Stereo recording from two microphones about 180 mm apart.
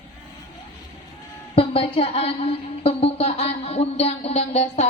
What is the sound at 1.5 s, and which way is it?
A woman's voice, 30° left (ahead or behind).